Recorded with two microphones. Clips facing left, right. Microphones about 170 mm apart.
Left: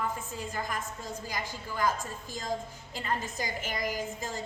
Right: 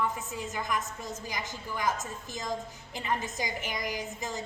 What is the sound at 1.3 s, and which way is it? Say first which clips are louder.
A woman's voice: even; 20° right (ahead or behind).